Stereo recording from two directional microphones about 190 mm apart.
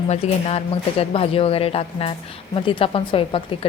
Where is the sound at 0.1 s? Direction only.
30° left (ahead or behind).